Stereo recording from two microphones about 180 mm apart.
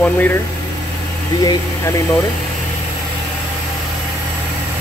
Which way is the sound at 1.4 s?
20° left (ahead or behind).